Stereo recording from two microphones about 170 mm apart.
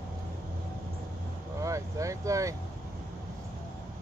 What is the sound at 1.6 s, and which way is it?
Speech, 20° right (ahead or behind).